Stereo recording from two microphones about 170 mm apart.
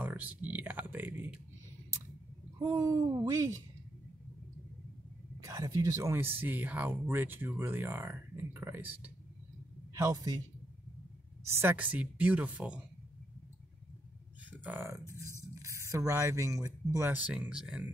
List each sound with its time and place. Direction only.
0.0 s a sound: 10° right (ahead or behind)
2.7 s speech: 20° right (ahead or behind)
5.4 s a man's voice: 20° right (ahead or behind)
11.4 s speech: 15° right (ahead or behind)
14.6 s speech: 10° right (ahead or behind)
15.0 s speech: 15° left (ahead or behind)
15.6 s speech: 15° right (ahead or behind)